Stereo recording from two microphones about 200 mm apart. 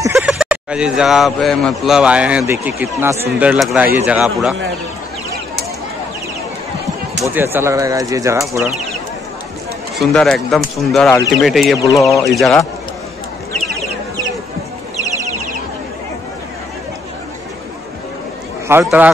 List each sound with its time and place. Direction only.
0.1 s speech: 5° right (ahead or behind)
7.2 s speech: 10° right (ahead or behind)
9.9 s speech: centre (ahead or behind)
11.8 s speech: 15° left (ahead or behind)
12.3 s speech: centre (ahead or behind)
15.0 s a sound: 35° right (ahead or behind)
18.7 s speech: 10° right (ahead or behind)